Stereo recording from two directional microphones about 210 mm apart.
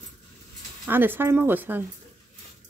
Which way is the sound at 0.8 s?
10° right (ahead or behind).